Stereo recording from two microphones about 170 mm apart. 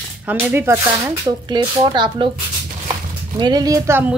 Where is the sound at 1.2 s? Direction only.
25° right (ahead or behind).